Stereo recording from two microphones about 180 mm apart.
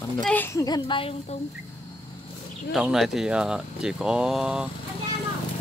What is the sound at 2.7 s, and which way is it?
Speech, centre (ahead or behind).